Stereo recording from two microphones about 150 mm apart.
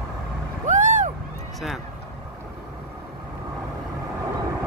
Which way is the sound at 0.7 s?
55° right (ahead or behind).